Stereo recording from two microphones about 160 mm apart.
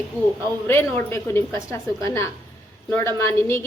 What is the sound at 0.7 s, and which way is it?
A woman's voice, 15° left (ahead or behind).